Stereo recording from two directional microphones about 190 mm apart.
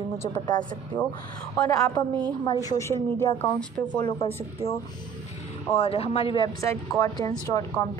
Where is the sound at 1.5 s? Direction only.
20° left (ahead or behind).